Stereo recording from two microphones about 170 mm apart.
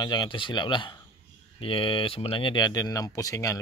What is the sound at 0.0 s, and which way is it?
Speech, 25° left (ahead or behind).